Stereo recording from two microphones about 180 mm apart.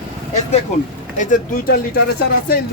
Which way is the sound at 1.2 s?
50° left (ahead or behind).